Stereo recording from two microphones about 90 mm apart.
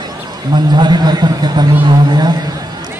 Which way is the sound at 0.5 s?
50° right (ahead or behind).